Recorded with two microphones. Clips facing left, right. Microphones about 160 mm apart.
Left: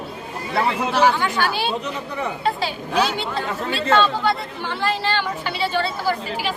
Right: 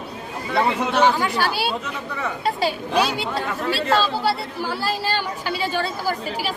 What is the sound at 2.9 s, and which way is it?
Speech, 10° right (ahead or behind).